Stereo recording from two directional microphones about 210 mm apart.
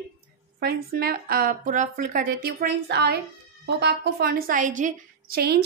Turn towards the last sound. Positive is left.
turn(degrees=-50)  # may be behind; listen again after turning